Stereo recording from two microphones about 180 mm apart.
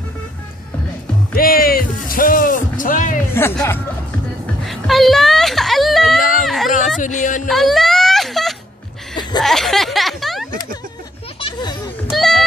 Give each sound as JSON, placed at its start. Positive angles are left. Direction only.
{"t": 1.3, "sound": "music", "side_deg": 55}
{"t": 3.3, "sound": "speech", "side_deg": 15}
{"t": 4.6, "sound": "a sound", "side_deg": 0}
{"t": 7.0, "sound": "speech", "side_deg": 45}
{"t": 7.4, "sound": "baby cry", "side_deg": 0}
{"t": 9.4, "sound": "speech", "side_deg": 0}
{"t": 12.1, "sound": "a sound", "side_deg": 0}